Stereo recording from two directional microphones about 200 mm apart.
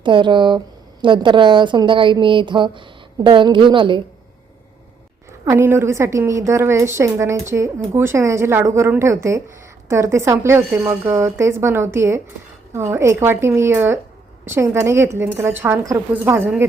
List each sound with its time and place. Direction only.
0.0 s a woman's voice: 25° right (ahead or behind)
5.5 s a woman's voice: 10° right (ahead or behind)